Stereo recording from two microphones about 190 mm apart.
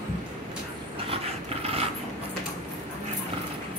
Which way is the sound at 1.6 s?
30° right (ahead or behind).